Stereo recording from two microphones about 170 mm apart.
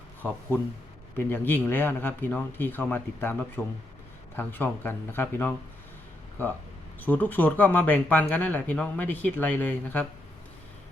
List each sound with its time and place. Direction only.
1.1 s speech: 10° left (ahead or behind)
7.0 s speech: 10° left (ahead or behind)